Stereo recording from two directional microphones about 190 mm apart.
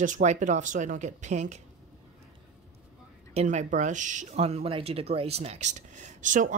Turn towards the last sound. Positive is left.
turn(degrees=-40)  # may be behind; listen again after turning